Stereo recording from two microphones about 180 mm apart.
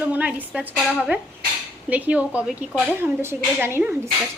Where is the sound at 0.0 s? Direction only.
10° right (ahead or behind).